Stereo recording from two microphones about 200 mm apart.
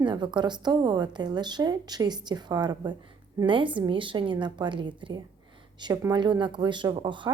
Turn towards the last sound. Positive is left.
turn(degrees=-25)  # may be behind; listen again after turning